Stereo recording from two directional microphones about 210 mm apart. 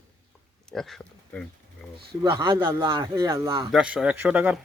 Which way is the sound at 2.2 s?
20° right (ahead or behind).